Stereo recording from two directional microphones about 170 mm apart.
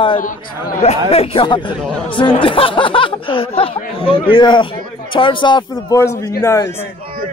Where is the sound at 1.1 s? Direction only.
35° left (ahead or behind); by 6.9 s 15° left (ahead or behind).